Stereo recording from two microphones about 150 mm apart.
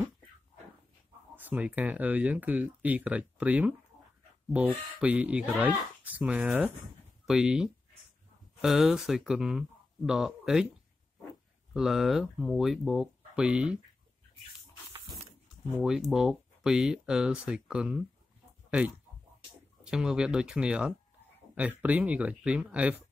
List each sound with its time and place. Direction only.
1.3 s speech: 10° right (ahead or behind)
11.7 s speech: centre (ahead or behind)
15.8 s speech: 5° right (ahead or behind)